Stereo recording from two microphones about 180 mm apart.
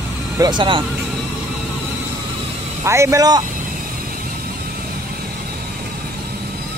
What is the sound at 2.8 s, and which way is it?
Speech, 15° right (ahead or behind).